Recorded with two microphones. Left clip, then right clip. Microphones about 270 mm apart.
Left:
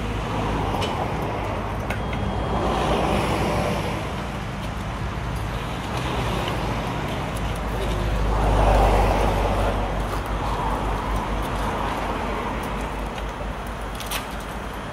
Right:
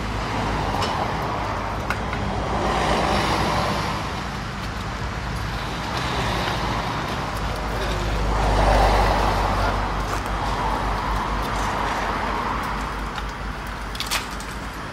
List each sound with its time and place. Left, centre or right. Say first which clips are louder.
2.6 s vehicle: right 1 dB; right
8.5 s vehicle: right 1 dB; right